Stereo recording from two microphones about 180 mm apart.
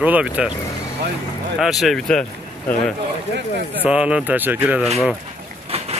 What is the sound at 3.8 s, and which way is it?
Speech, 5° right (ahead or behind).